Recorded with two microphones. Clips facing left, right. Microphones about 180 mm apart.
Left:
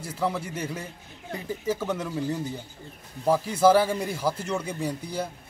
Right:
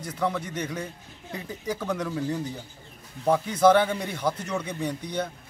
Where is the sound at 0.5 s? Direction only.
5° left (ahead or behind).